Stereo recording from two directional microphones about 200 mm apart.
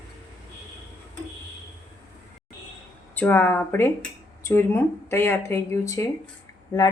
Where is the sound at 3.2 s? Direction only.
10° left (ahead or behind).